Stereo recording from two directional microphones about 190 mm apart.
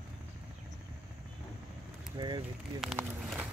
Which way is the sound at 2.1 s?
25° right (ahead or behind).